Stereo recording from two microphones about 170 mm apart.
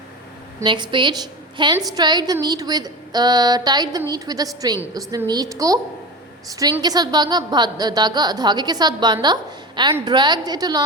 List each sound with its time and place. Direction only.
0.6 s a woman's voice: 30° right (ahead or behind)
6.8 s a woman's voice: 25° right (ahead or behind)